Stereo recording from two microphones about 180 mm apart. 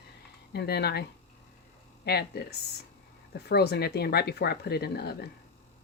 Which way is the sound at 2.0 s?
65° left (ahead or behind).